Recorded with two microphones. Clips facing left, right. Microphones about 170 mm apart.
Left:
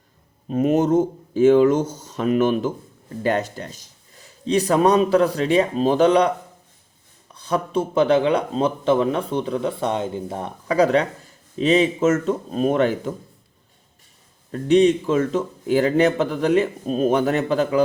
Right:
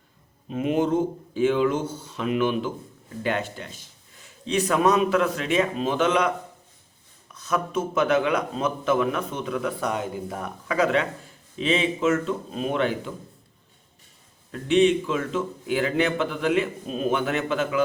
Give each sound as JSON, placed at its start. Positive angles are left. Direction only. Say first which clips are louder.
{"t": 0.4, "sound": "a man's voice", "louder": "left 5 dB", "side_deg": 40}
{"t": 14.5, "sound": "a man's voice", "louder": "left 4 dB", "side_deg": 40}